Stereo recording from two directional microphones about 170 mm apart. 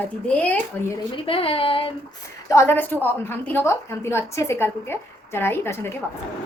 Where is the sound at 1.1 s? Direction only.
30° left (ahead or behind).